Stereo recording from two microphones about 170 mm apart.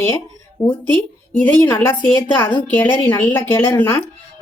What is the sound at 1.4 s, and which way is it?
Speech, 10° left (ahead or behind).